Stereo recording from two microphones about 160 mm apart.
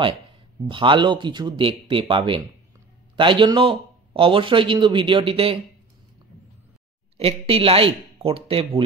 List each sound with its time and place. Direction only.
0.7 s speech: 30° right (ahead or behind)
7.2 s speech: 35° right (ahead or behind)